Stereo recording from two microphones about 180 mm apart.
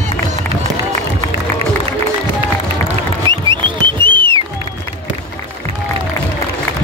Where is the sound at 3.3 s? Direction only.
25° right (ahead or behind).